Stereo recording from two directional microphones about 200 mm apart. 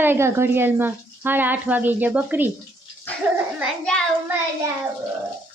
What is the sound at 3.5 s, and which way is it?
Child singing, centre (ahead or behind).